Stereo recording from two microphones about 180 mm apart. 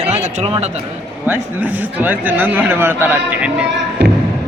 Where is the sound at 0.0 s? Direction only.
35° right (ahead or behind).